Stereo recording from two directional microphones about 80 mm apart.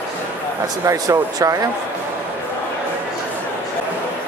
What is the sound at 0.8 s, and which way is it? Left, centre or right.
Speech, right.